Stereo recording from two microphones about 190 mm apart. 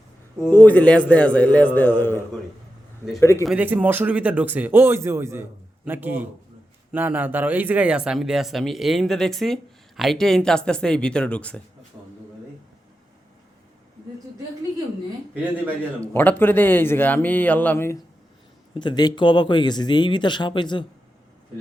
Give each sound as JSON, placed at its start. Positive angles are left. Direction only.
{"t": 0.5, "sound": "speech", "side_deg": 10}
{"t": 3.4, "sound": "speech", "side_deg": -5}
{"t": 16.1, "sound": "speech", "side_deg": 10}
{"t": 18.7, "sound": "speech", "side_deg": 25}